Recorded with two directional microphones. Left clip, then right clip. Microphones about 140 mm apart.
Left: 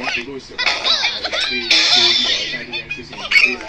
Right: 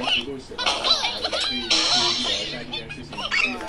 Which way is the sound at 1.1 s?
20° right (ahead or behind).